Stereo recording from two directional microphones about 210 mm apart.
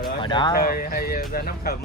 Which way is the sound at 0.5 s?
45° left (ahead or behind).